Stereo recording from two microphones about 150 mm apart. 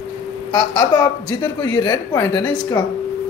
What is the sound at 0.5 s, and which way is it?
Speech, 30° left (ahead or behind).